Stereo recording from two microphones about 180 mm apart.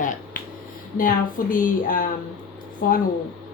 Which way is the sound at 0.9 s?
50° left (ahead or behind).